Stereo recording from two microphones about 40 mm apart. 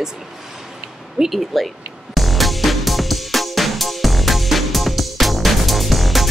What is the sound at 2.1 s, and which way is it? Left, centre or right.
Music, centre.